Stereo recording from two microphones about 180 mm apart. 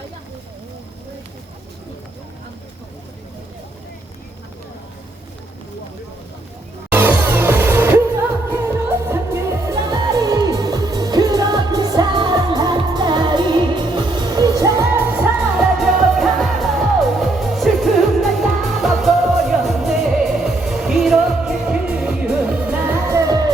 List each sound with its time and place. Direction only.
6.9 s music: 10° right (ahead or behind)
15.5 s music: centre (ahead or behind); by 23.5 s 20° right (ahead or behind)